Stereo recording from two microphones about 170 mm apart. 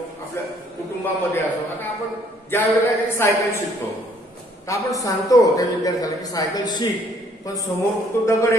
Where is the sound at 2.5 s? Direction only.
15° left (ahead or behind).